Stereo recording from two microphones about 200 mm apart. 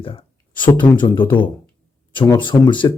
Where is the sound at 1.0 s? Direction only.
25° left (ahead or behind).